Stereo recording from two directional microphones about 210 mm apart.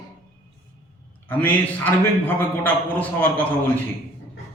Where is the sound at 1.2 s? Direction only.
10° left (ahead or behind).